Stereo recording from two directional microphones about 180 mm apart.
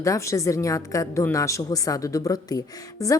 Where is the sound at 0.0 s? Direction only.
15° left (ahead or behind).